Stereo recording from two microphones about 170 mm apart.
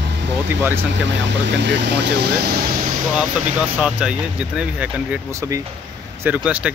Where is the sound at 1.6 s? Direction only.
90° right; by 2.9 s 60° right (ahead or behind).